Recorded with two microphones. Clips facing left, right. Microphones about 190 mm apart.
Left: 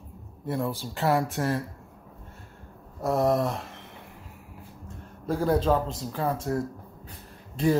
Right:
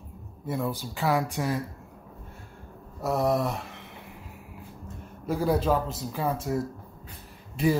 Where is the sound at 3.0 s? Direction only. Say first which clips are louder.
Left 2 dB; centre (ahead or behind).